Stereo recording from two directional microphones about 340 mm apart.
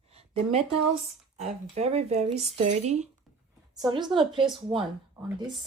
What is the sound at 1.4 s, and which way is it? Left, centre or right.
Speech, centre.